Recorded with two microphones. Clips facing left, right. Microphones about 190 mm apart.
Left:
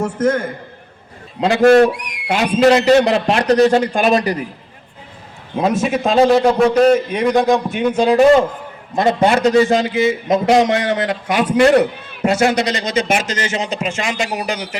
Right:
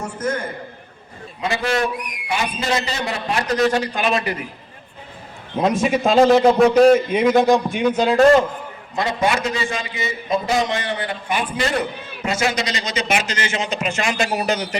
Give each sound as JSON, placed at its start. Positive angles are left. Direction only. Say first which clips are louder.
{"t": 0.0, "sound": "a man's voice", "louder": "left 8 dB", "side_deg": 90}
{"t": 1.4, "sound": "a man's voice", "louder": "left 11 dB", "side_deg": 70}
{"t": 1.9, "sound": "a man's voice", "louder": "left 5 dB", "side_deg": 80}
{"t": 3.5, "sound": "speech", "louder": "left 7 dB", "side_deg": 35}
{"t": 3.8, "sound": "speech", "louder": "left 6 dB", "side_deg": 45}
{"t": 5.8, "sound": "a man's voice", "louder": "even", "side_deg": 0}
{"t": 8.0, "sound": "a man's voice", "louder": "left 3 dB", "side_deg": 15}
{"t": 9.0, "sound": "a man's voice", "louder": "left 6 dB", "side_deg": 50}